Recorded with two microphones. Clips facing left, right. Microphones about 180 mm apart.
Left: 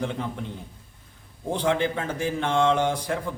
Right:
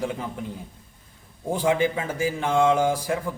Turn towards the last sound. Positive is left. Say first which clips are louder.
# right 2 dB
turn(degrees=-5)  # may be behind; listen again after turning